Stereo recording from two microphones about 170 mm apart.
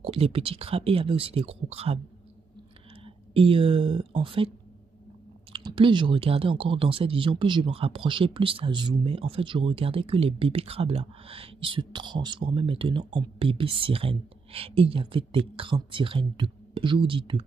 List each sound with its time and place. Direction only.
0.0 s speech: 35° right (ahead or behind)
3.3 s speech: 30° right (ahead or behind)
5.5 s speech: 30° right (ahead or behind)